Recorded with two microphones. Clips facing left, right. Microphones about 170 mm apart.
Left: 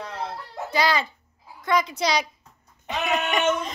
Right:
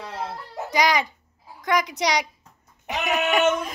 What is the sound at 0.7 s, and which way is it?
A child's voice, 15° right (ahead or behind).